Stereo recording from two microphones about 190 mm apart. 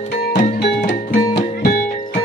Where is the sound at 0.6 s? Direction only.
50° left (ahead or behind).